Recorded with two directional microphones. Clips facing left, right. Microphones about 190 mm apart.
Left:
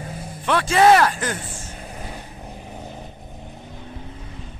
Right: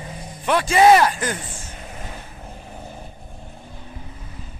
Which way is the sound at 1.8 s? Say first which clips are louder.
Left 1 dB; 10° left (ahead or behind).